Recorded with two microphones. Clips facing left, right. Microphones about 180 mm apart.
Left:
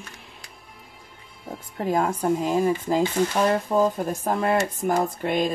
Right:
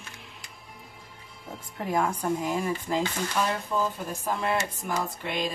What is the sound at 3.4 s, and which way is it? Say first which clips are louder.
Speech: left 6 dB; 45° left (ahead or behind).